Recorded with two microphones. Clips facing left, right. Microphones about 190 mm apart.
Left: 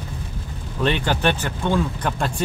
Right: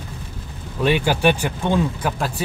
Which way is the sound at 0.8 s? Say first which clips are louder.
Right 3 dB; 10° right (ahead or behind).